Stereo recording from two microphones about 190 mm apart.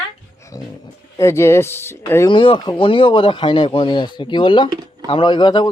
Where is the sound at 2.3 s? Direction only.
25° left (ahead or behind).